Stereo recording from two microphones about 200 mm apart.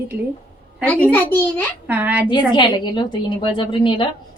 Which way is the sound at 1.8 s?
10° right (ahead or behind).